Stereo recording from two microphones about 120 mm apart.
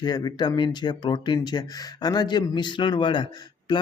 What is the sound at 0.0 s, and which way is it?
Speech, 35° left (ahead or behind).